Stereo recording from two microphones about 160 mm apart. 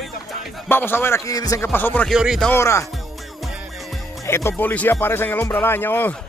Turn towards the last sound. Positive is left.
turn(degrees=10)  # may be behind; listen again after turning